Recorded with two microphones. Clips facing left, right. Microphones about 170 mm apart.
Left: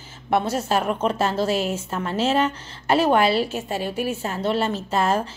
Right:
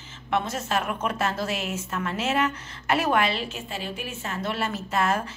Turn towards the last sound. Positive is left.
turn(degrees=30)  # may be behind; listen again after turning